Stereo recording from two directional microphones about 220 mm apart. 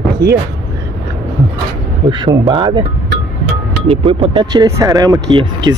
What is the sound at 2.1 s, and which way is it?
Speech, 20° right (ahead or behind).